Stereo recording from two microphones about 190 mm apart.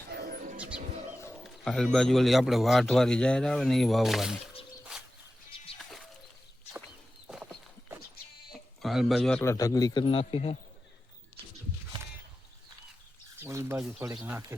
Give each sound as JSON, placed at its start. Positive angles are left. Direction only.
{"t": 0.1, "sound": "bird", "side_deg": -50}
{"t": 0.5, "sound": "music", "side_deg": -5}
{"t": 1.5, "sound": "a man's voice", "side_deg": 5}
{"t": 4.9, "sound": "a sound", "side_deg": -5}
{"t": 8.5, "sound": "a sound", "side_deg": 0}
{"t": 9.4, "sound": "a man's voice", "side_deg": 15}
{"t": 13.4, "sound": "bird", "side_deg": -15}
{"t": 14.2, "sound": "speech", "side_deg": -10}